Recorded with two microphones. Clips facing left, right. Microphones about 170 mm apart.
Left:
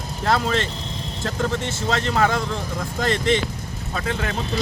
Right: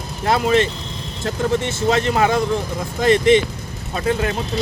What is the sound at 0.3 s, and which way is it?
Speech, 15° right (ahead or behind).